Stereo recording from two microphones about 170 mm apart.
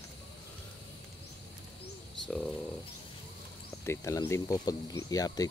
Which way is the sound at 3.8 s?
15° left (ahead or behind).